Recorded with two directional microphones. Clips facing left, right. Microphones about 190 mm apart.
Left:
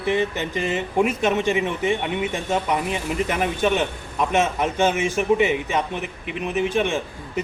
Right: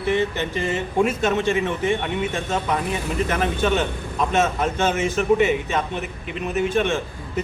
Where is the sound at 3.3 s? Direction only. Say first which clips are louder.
Even; 15° left (ahead or behind).